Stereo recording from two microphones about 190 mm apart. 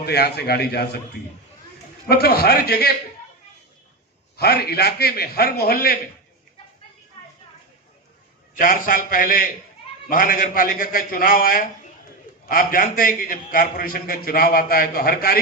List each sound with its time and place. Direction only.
0.0 s a man's voice: 60° left (ahead or behind)
2.0 s a man's voice: 55° left (ahead or behind)
4.4 s a man's voice: 55° left (ahead or behind)
8.5 s a man's voice: 45° left (ahead or behind)